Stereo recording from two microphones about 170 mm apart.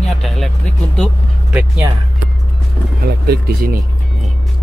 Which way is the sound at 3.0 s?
65° right (ahead or behind).